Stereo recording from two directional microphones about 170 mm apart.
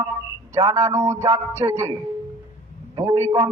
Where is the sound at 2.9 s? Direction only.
20° right (ahead or behind).